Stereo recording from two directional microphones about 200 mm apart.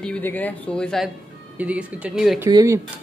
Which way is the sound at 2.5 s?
15° right (ahead or behind).